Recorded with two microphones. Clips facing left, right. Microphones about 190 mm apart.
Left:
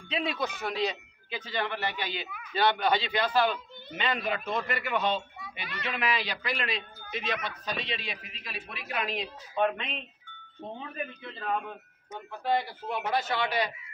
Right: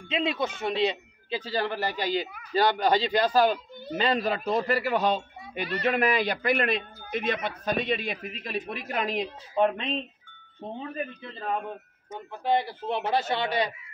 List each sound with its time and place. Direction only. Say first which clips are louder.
0.1 s a man's voice: right 4 dB; 25° right (ahead or behind); by 9.2 s 45° right (ahead or behind)
9.6 s a man's voice: right 4 dB; 35° right (ahead or behind)
12.4 s speech: right 3 dB; 25° right (ahead or behind)